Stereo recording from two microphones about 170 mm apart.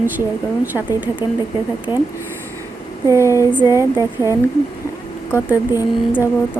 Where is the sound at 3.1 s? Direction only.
15° right (ahead or behind).